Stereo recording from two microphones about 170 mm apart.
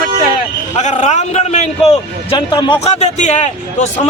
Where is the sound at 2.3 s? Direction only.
25° left (ahead or behind).